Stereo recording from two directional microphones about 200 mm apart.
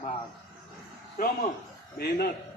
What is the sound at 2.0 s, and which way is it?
Speech, 50° left (ahead or behind).